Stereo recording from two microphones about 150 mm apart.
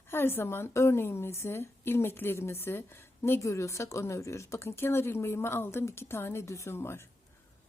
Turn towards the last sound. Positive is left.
turn(degrees=15)  # may be behind; listen again after turning